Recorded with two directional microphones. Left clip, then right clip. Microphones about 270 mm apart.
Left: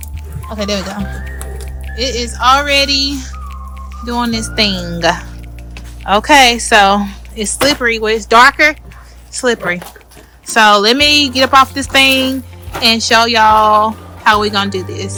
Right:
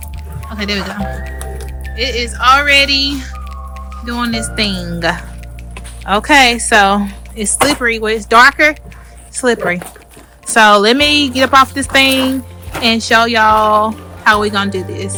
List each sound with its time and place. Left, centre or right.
0.5 s speech: centre
2.0 s speech: centre